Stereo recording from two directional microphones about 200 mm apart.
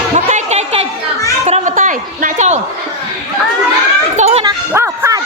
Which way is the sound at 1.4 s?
35° right (ahead or behind).